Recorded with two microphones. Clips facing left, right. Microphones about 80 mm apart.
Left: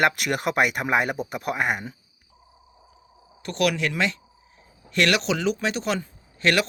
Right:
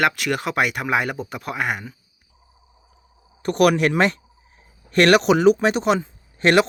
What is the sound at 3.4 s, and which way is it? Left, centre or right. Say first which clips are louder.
Speech: right 7 dB; right.